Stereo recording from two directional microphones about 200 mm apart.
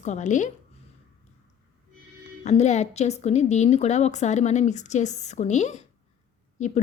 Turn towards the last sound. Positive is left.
turn(degrees=35)  # may be behind; listen again after turning